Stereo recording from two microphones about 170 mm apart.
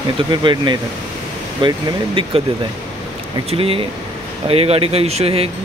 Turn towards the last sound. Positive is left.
turn(degrees=-35)  # may be behind; listen again after turning